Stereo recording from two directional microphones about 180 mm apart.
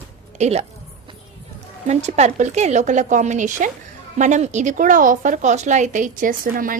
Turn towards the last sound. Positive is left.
turn(degrees=-50)  # may be behind; listen again after turning